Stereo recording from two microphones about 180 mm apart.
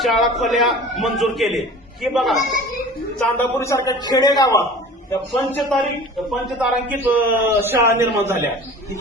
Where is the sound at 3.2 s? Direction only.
15° left (ahead or behind).